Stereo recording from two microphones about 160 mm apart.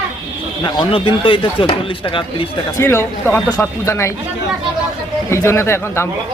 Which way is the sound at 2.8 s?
15° left (ahead or behind).